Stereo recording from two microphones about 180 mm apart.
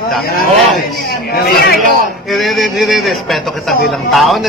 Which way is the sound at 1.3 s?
60° left (ahead or behind).